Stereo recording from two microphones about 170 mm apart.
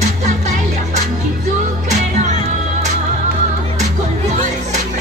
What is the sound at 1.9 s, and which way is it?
Music, 45° right (ahead or behind).